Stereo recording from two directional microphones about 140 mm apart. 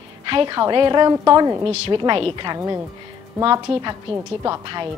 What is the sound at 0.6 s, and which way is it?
A woman's voice, 35° right (ahead or behind).